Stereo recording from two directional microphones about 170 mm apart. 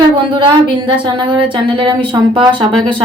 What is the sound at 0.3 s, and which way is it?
Speech, 30° right (ahead or behind).